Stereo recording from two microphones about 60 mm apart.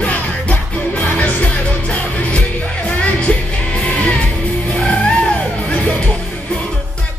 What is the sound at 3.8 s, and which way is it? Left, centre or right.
Music, centre.